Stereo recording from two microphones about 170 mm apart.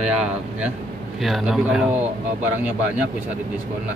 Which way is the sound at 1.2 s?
Centre (ahead or behind).